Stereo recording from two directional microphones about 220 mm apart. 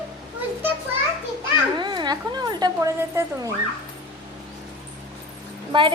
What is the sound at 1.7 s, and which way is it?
Speech, 20° right (ahead or behind).